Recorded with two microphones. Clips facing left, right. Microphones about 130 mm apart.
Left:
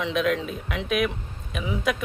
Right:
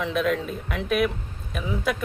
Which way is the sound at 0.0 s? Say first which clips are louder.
Even; centre (ahead or behind).